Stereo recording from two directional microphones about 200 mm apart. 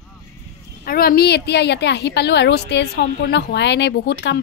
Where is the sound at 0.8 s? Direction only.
50° left (ahead or behind).